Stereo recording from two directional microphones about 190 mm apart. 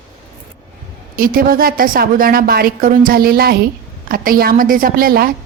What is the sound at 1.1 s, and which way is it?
A woman's voice, 50° right (ahead or behind).